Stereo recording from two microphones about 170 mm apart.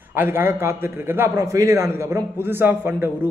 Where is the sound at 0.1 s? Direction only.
15° right (ahead or behind).